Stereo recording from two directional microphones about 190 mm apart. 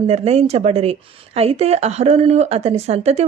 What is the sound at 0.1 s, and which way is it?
Speech, 35° right (ahead or behind).